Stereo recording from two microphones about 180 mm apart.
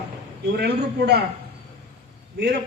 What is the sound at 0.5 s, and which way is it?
Speech, 65° right (ahead or behind).